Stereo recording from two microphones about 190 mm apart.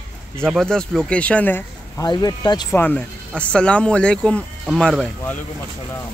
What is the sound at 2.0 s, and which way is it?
Speech, 20° left (ahead or behind).